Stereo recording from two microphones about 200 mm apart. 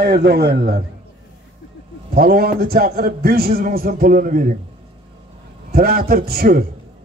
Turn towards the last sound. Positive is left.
turn(degrees=-50)  # may be behind; listen again after turning